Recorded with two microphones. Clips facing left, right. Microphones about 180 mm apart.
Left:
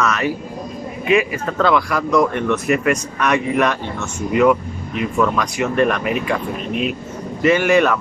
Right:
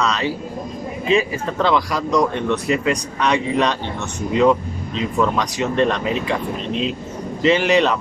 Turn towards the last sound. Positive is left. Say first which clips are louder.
# left 1 dB
turn(degrees=-20)  # may be behind; listen again after turning